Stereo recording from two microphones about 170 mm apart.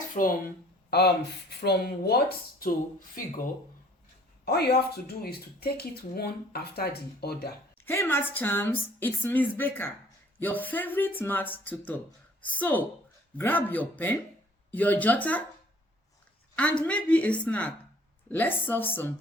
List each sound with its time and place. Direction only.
0.1 s speech: 55° left (ahead or behind)
4.4 s speech: 70° left (ahead or behind)
7.9 s a woman's voice: 15° left (ahead or behind)
16.6 s a woman's voice: 5° left (ahead or behind)